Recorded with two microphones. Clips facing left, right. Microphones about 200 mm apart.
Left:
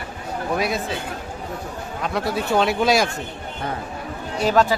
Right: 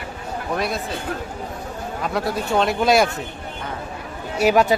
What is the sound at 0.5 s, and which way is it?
Speech, centre (ahead or behind).